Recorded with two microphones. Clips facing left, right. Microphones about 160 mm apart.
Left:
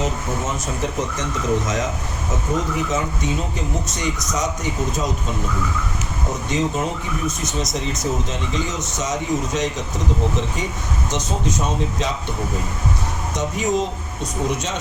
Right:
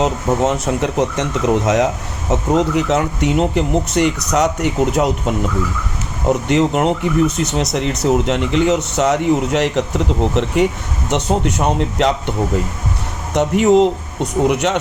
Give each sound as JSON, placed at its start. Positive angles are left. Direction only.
{"t": 0.0, "sound": "speech", "side_deg": -70}
{"t": 13.3, "sound": "speech", "side_deg": -65}